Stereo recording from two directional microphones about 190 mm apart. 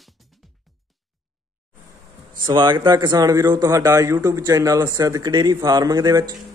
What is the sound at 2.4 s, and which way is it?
A man's voice, 25° right (ahead or behind).